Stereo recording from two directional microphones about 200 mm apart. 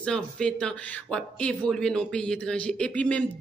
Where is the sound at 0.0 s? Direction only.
5° left (ahead or behind).